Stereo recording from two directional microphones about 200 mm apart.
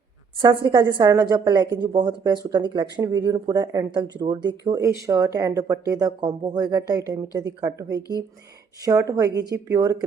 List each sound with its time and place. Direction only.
0.4 s speech: 20° right (ahead or behind)